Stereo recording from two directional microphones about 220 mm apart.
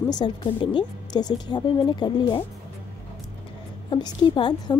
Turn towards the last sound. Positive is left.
turn(degrees=20)  # may be behind; listen again after turning